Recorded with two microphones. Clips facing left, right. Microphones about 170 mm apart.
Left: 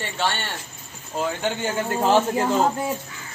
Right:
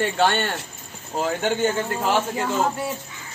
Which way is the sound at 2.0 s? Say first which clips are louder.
Left 5 dB; 35° left (ahead or behind).